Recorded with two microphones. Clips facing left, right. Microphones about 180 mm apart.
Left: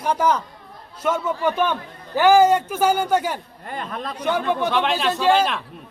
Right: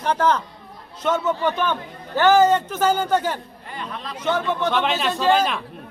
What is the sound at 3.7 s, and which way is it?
Speech, 50° left (ahead or behind).